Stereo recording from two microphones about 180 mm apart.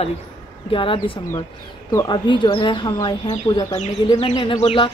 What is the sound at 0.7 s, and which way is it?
Speech, 30° left (ahead or behind).